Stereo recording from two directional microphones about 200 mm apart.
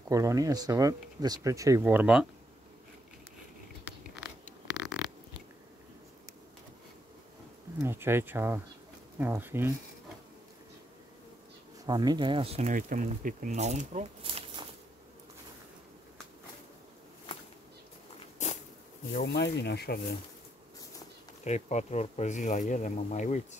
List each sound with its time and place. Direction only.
0.1 s speech: 15° right (ahead or behind)
4.6 s a sound: 5° right (ahead or behind)
7.8 s speech: 10° right (ahead or behind)
11.8 s speech: 20° right (ahead or behind)
18.4 s a sound: 35° left (ahead or behind)
19.1 s speech: 55° left (ahead or behind)
21.5 s speech: 35° left (ahead or behind)